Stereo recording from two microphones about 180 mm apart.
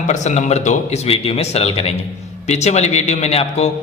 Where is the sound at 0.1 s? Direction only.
40° left (ahead or behind).